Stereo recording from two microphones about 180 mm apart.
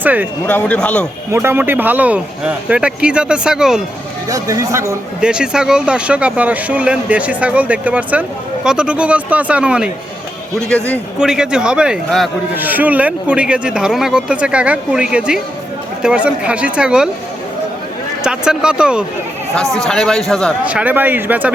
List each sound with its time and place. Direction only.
0.0 s speech: 10° right (ahead or behind)
0.4 s a man's voice: 10° left (ahead or behind)
1.3 s speech: 10° right (ahead or behind)
4.3 s speech: 20° right (ahead or behind)
5.2 s speech: 5° right (ahead or behind)
11.2 s a man's voice: 5° right (ahead or behind)
18.2 s a man's voice: 5° right (ahead or behind)